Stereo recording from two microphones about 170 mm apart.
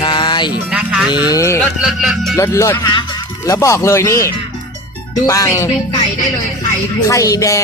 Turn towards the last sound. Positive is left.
turn(degrees=20)  # may be behind; listen again after turning